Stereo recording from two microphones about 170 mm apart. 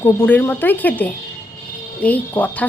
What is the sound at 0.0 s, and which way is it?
A woman's voice, 10° left (ahead or behind).